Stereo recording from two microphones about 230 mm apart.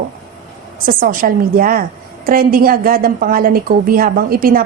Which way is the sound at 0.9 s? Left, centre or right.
Right.